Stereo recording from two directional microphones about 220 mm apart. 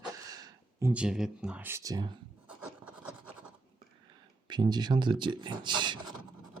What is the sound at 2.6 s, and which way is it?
Filing, 5° right (ahead or behind).